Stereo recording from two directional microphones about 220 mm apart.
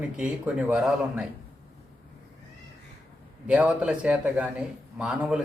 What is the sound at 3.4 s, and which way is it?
A man's voice, 5° right (ahead or behind).